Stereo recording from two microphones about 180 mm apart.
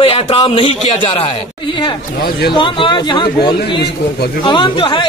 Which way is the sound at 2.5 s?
25° left (ahead or behind).